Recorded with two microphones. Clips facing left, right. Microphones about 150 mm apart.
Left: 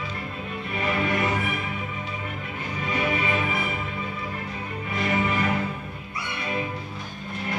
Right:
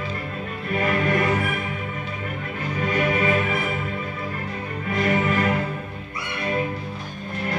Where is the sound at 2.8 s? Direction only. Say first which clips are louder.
Right 4 dB; 45° right (ahead or behind).